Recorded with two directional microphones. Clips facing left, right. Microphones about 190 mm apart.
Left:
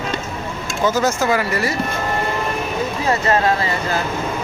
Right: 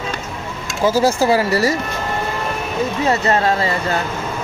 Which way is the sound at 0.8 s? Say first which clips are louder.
Right 3 dB; 30° right (ahead or behind).